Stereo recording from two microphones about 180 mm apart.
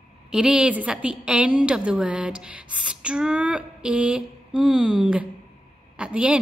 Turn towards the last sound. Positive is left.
turn(degrees=-5)  # may be behind; listen again after turning